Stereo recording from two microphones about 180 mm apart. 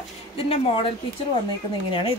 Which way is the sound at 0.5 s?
30° left (ahead or behind).